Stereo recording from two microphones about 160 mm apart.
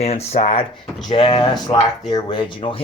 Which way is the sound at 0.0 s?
40° left (ahead or behind).